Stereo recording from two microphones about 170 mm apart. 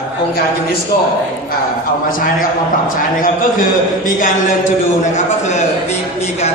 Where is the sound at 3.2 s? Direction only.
50° left (ahead or behind).